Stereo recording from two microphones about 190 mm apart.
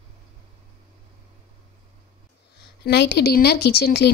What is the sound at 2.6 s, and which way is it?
Speech, 60° left (ahead or behind).